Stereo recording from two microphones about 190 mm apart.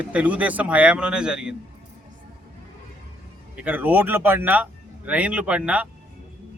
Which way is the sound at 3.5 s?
5° right (ahead or behind).